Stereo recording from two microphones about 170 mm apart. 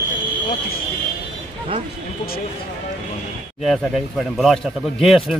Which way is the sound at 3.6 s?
Centre (ahead or behind).